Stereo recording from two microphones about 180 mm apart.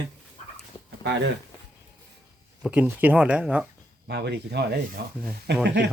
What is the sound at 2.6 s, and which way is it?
Speech, 5° right (ahead or behind).